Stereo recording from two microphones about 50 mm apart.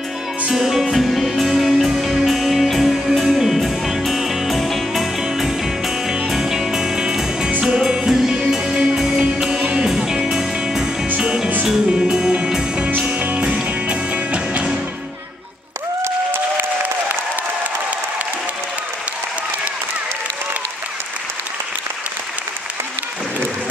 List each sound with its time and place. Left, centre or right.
0.5 s music: centre
6.0 s music: centre
12.4 s music: centre
12.9 s music: right